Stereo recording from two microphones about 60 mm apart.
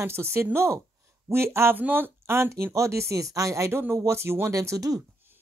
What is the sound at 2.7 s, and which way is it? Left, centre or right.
Speech, right.